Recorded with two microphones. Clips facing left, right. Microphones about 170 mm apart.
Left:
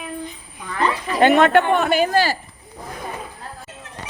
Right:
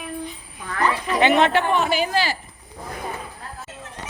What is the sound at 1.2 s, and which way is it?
A man's voice, 50° left (ahead or behind).